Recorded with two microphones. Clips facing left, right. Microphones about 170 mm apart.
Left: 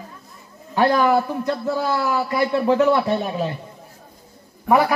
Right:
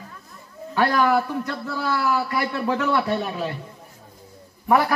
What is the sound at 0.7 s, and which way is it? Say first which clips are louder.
A man's voice: left 3 dB; 20° left (ahead or behind).